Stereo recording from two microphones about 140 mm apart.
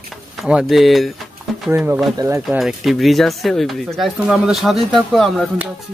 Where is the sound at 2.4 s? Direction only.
Centre (ahead or behind).